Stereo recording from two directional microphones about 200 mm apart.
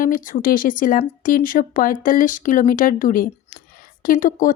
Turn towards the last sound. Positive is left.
turn(degrees=40)  # may be behind; listen again after turning